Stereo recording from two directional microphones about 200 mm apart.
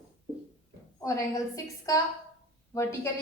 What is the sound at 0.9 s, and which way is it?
A woman's voice, 15° left (ahead or behind).